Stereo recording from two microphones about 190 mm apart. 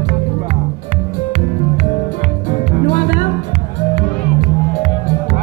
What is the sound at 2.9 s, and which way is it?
Music, 40° left (ahead or behind).